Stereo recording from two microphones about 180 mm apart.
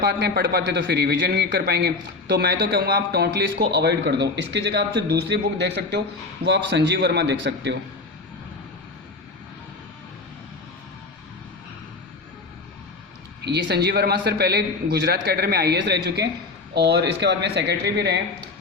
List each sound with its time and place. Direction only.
0.0 s a man's voice: 65° right (ahead or behind)
13.4 s a man's voice: 70° right (ahead or behind)